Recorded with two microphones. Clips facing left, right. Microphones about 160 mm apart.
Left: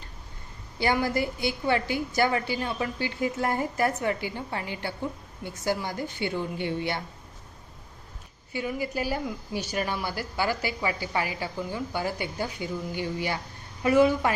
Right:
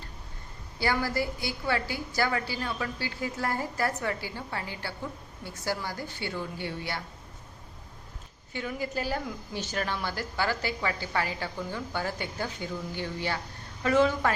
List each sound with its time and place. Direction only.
0.8 s a woman's voice: 20° left (ahead or behind)
8.5 s a woman's voice: 10° left (ahead or behind)